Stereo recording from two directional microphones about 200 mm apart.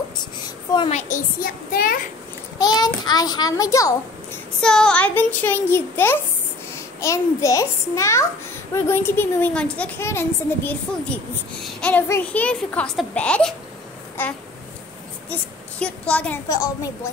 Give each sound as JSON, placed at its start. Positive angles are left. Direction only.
{"t": 0.7, "sound": "a child's voice", "side_deg": 35}
{"t": 2.6, "sound": "a child's voice", "side_deg": 20}
{"t": 4.6, "sound": "a child's voice", "side_deg": 5}
{"t": 15.8, "sound": "a child's voice", "side_deg": 5}